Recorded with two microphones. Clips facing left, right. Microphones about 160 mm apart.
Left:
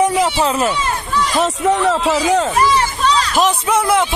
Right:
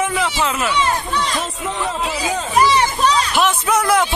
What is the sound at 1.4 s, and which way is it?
Speech, 75° left (ahead or behind).